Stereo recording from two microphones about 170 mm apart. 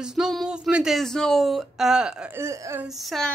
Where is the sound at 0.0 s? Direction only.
Centre (ahead or behind).